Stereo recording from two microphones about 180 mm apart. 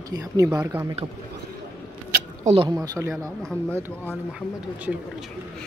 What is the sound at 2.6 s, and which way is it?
Speech, 20° right (ahead or behind).